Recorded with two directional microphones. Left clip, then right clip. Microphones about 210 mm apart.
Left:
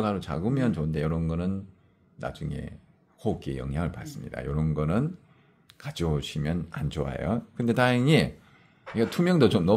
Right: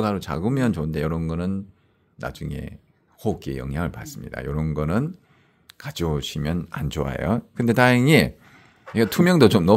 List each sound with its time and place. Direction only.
0.0 s speech: 30° right (ahead or behind)